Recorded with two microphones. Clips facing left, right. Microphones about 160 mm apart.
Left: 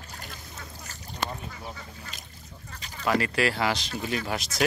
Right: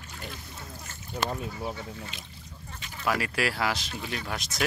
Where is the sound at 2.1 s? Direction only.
40° left (ahead or behind).